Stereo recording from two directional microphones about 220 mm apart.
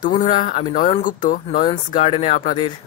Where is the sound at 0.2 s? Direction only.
30° left (ahead or behind).